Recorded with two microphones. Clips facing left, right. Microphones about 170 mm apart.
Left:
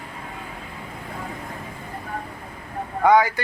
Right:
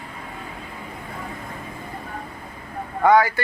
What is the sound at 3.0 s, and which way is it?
Speech, 15° left (ahead or behind).